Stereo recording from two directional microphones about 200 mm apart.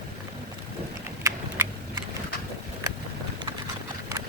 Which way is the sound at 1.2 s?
10° right (ahead or behind).